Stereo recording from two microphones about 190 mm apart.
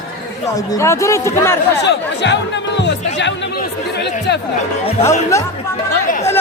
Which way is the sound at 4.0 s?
65° left (ahead or behind).